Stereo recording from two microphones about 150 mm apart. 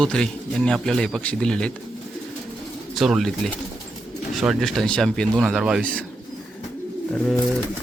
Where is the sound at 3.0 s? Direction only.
Centre (ahead or behind).